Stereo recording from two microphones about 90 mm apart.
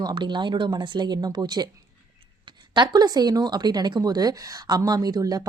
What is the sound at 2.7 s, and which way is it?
Speech, 55° right (ahead or behind).